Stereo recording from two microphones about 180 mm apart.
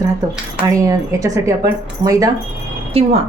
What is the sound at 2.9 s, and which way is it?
Speech, 35° right (ahead or behind).